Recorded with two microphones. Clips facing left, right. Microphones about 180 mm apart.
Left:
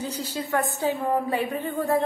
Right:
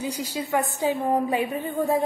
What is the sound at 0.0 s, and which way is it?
A woman's voice, 15° right (ahead or behind).